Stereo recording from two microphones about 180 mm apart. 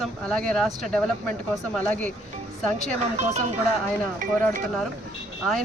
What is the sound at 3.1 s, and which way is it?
Speech, 40° right (ahead or behind).